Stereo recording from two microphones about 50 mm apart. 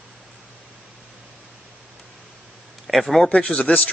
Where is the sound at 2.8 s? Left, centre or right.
Centre.